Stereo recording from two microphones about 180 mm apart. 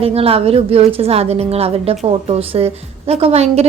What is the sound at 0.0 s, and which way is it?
A woman's voice, 35° right (ahead or behind).